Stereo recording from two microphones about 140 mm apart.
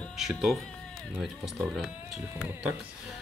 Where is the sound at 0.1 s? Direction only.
Centre (ahead or behind).